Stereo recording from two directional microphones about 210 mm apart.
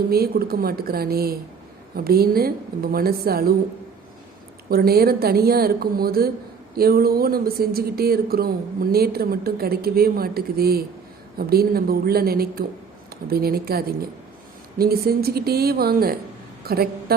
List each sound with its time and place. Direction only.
0.1 s speech: 45° right (ahead or behind)
4.7 s speech: 45° right (ahead or behind)